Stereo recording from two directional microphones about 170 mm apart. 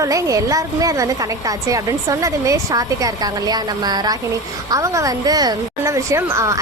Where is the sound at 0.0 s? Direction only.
20° right (ahead or behind).